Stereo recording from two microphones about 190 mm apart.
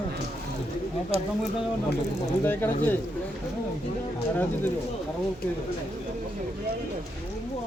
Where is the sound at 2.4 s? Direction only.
10° left (ahead or behind).